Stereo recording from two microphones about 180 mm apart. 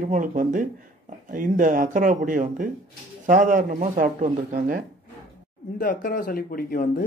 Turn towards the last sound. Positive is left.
turn(degrees=55)  # may be behind; listen again after turning